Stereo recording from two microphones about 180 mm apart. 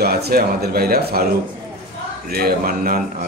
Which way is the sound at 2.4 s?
55° right (ahead or behind).